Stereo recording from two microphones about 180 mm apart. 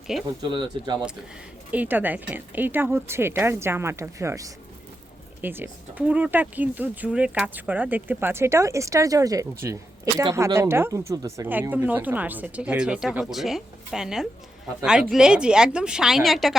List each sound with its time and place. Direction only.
0.1 s a woman's voice: centre (ahead or behind)
0.5 s speech: 25° right (ahead or behind)
1.7 s a woman's voice: 10° right (ahead or behind)